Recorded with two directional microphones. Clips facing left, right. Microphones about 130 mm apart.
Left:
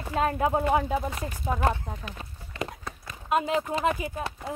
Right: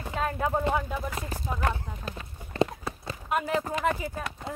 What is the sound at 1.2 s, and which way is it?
Speech, 35° right (ahead or behind).